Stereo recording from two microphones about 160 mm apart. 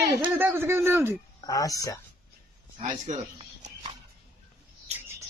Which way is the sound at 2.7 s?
50° right (ahead or behind).